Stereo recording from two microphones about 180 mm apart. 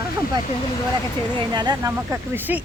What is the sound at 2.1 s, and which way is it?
Speech, 10° right (ahead or behind).